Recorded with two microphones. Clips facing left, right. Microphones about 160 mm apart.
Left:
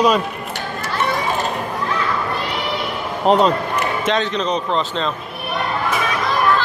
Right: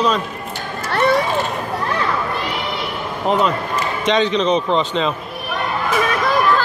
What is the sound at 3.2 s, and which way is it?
Speech, 35° left (ahead or behind).